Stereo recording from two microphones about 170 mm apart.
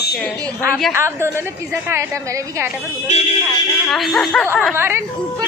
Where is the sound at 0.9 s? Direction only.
15° right (ahead or behind).